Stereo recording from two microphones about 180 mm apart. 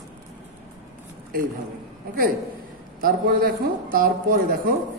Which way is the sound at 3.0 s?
55° right (ahead or behind).